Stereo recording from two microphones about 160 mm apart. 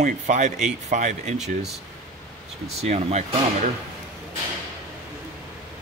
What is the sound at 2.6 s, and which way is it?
Speech, 40° right (ahead or behind).